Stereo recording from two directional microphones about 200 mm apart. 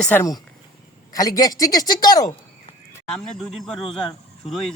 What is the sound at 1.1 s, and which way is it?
A man's voice, 15° left (ahead or behind).